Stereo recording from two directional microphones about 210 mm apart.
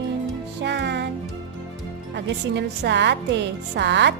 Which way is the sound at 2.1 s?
55° right (ahead or behind).